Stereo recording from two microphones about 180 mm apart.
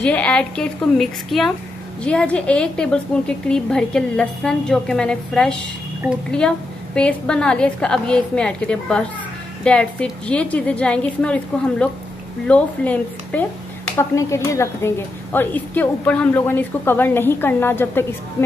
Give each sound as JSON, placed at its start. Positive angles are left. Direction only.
{"t": 0.0, "sound": "a woman's voice", "side_deg": 5}
{"t": 7.0, "sound": "a woman's voice", "side_deg": 5}